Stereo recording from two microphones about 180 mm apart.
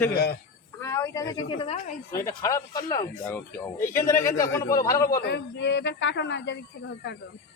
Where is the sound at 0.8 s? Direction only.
15° left (ahead or behind); by 2.0 s 35° left (ahead or behind).